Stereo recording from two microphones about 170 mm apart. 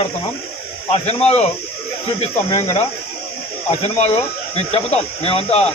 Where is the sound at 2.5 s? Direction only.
35° left (ahead or behind).